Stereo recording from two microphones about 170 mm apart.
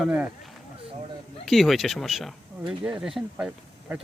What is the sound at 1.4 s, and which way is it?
Speech, centre (ahead or behind).